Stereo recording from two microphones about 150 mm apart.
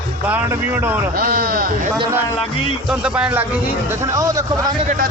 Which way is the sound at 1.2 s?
75° right (ahead or behind).